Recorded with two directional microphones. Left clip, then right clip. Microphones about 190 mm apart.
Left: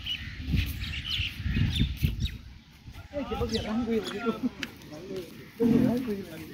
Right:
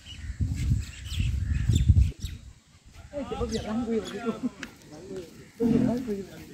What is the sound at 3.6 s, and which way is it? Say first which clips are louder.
Speech: even; centre (ahead or behind).